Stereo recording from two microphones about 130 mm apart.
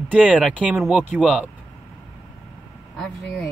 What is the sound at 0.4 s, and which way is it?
Speech, 5° left (ahead or behind).